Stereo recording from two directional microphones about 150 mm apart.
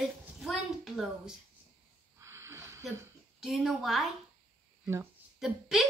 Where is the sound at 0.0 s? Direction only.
Centre (ahead or behind).